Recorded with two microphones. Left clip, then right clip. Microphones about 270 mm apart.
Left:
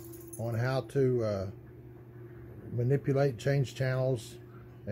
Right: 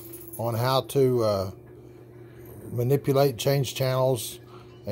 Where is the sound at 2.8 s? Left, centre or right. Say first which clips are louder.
Right 7 dB; centre.